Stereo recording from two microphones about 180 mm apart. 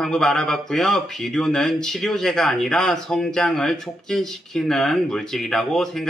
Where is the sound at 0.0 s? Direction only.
5° left (ahead or behind).